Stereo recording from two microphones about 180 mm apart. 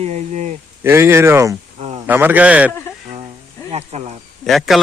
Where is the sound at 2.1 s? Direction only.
10° right (ahead or behind).